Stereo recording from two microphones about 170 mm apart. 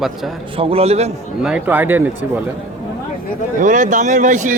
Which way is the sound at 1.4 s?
5° right (ahead or behind).